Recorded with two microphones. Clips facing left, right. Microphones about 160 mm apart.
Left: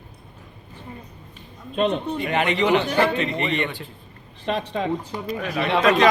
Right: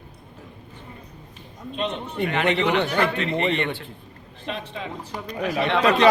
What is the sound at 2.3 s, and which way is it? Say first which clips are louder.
Speech: left 2 dB; 15° left (ahead or behind).